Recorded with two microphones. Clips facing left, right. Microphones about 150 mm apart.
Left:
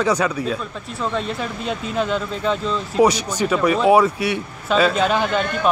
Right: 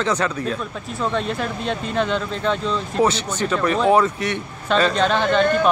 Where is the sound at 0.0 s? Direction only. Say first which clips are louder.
Left 2 dB; 10° left (ahead or behind).